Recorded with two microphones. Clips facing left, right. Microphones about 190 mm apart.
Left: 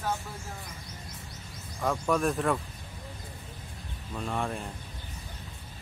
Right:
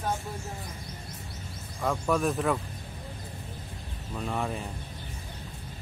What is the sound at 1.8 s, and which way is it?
Speech, 5° right (ahead or behind).